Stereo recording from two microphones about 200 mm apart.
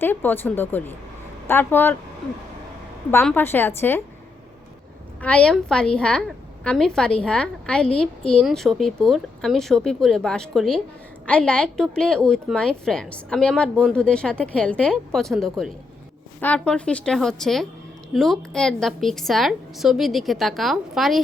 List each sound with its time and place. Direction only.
0.0 s speech: 10° left (ahead or behind)
3.1 s speech: 10° left (ahead or behind)
5.2 s a woman's voice: 5° left (ahead or behind)